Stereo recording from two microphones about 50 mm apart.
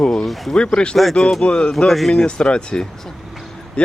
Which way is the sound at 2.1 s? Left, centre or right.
Centre.